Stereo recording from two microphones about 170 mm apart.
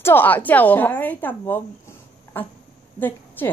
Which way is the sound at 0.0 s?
10° left (ahead or behind).